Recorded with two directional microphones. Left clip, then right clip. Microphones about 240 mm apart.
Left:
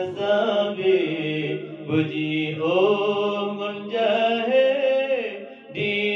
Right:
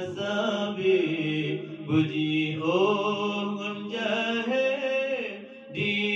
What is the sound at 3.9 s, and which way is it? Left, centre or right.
Mantra, centre.